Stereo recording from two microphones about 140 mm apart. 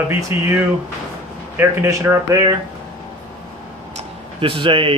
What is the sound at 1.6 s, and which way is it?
Speech, 20° right (ahead or behind).